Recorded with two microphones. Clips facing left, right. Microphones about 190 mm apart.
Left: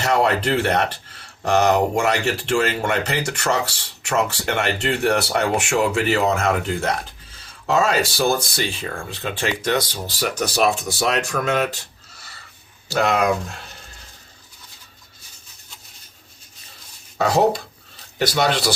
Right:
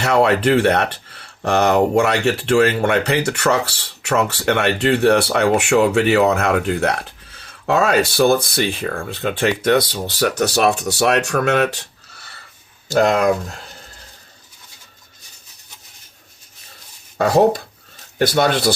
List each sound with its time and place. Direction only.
0.0 s speech: 65° right (ahead or behind)
12.9 s speech: 45° right (ahead or behind)
17.2 s speech: 50° right (ahead or behind)